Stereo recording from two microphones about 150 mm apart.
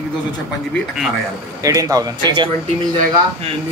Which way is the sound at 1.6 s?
20° right (ahead or behind).